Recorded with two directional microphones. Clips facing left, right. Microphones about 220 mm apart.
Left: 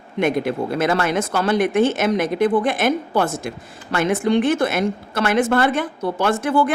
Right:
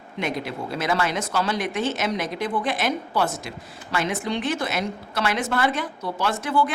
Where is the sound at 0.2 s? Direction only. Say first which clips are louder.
Left 8 dB; 55° left (ahead or behind).